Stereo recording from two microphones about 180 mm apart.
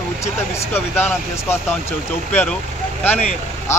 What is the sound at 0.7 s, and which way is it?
Speech, 10° left (ahead or behind).